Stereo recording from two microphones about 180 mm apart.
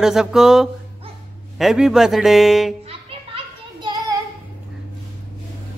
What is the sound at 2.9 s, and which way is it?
Children playing, 30° right (ahead or behind).